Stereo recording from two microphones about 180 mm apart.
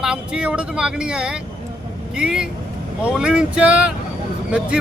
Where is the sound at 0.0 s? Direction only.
5° right (ahead or behind).